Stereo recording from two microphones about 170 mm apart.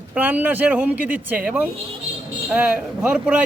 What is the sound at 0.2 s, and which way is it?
A man's voice, 10° right (ahead or behind).